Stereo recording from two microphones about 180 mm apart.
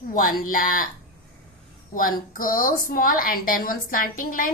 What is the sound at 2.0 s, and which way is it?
A woman's voice, 50° left (ahead or behind).